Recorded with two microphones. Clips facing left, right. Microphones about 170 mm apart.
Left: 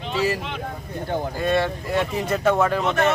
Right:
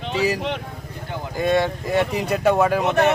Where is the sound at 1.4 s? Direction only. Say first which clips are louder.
Right 4 dB; 15° right (ahead or behind).